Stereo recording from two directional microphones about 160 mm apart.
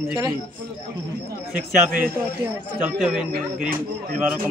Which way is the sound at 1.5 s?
60° right (ahead or behind).